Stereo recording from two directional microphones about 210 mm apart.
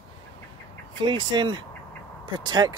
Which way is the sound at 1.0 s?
20° right (ahead or behind).